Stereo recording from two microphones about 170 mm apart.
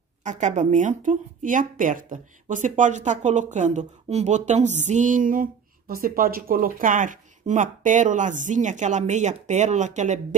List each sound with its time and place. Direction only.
0.2 s speech: 45° right (ahead or behind)